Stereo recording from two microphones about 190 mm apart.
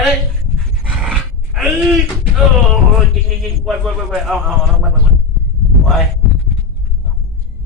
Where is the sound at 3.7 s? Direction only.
Centre (ahead or behind).